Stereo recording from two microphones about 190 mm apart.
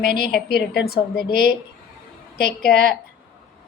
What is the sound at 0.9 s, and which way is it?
Speech, 55° left (ahead or behind).